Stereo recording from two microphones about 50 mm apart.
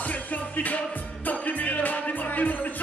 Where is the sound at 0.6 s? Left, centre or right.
Left.